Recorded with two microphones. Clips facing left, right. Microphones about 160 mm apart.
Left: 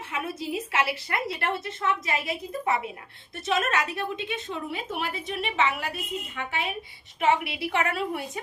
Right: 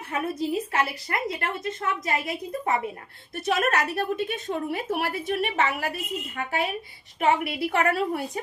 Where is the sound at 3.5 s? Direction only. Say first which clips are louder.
Right 2 dB; 55° right (ahead or behind).